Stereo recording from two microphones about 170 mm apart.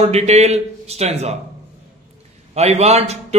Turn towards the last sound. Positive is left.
turn(degrees=-40)  # may be behind; listen again after turning